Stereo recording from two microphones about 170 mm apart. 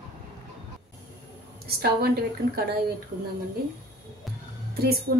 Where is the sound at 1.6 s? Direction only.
70° right (ahead or behind).